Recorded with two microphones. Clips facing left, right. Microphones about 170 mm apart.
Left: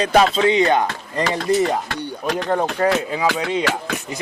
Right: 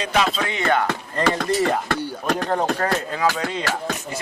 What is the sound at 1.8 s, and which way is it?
Speech, 50° right (ahead or behind).